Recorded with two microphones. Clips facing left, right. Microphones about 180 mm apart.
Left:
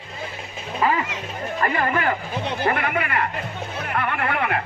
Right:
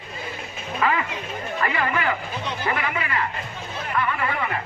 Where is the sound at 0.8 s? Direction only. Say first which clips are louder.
Left 2 dB; 35° left (ahead or behind).